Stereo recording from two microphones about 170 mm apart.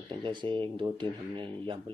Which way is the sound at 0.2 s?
30° right (ahead or behind).